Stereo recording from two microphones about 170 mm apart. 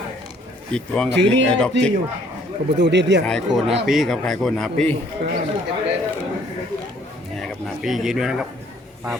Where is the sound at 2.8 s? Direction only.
90° right.